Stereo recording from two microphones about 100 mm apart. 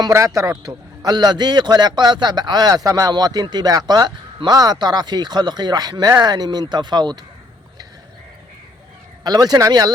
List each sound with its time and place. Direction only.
0.6 s a man's voice: 40° right (ahead or behind)
9.2 s speech: 40° right (ahead or behind)